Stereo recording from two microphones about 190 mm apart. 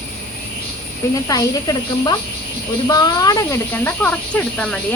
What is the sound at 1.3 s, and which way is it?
Speech, 20° left (ahead or behind).